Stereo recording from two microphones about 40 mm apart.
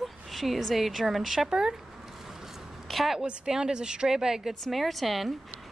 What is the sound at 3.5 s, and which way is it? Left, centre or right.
Speech, centre.